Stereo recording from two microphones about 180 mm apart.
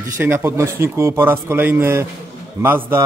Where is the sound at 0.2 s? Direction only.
15° right (ahead or behind).